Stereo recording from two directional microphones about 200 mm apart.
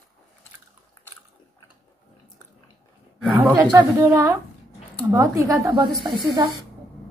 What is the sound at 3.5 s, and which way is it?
A woman's voice, 15° right (ahead or behind).